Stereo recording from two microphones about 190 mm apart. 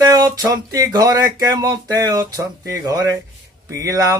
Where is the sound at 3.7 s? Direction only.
15° right (ahead or behind).